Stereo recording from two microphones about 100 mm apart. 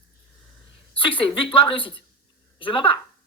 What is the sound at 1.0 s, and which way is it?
Speech, 60° left (ahead or behind).